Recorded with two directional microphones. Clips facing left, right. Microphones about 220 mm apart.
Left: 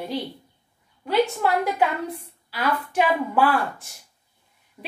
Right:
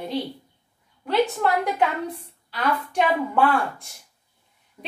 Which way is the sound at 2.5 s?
5° left (ahead or behind).